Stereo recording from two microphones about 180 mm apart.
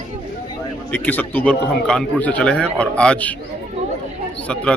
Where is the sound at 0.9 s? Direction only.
10° left (ahead or behind).